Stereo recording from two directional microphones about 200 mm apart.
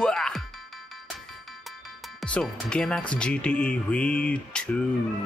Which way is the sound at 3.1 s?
5° left (ahead or behind).